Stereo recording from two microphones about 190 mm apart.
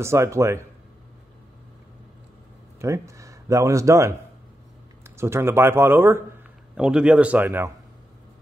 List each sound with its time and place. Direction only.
0.0 s speech: 15° right (ahead or behind)
2.8 s speech: 15° right (ahead or behind)